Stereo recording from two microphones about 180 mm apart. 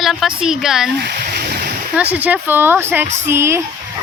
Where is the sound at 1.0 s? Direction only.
65° right (ahead or behind).